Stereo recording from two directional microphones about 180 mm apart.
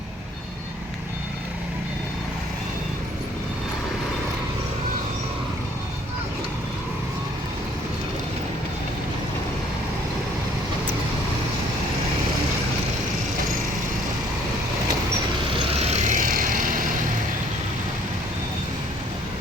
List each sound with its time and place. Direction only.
15.5 s vehicle: 35° right (ahead or behind)